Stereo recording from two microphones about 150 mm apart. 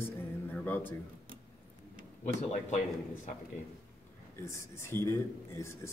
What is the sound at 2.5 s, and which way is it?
Speech, 55° left (ahead or behind).